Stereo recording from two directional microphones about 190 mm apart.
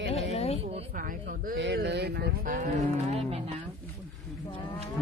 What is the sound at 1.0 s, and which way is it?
Speech, 45° right (ahead or behind).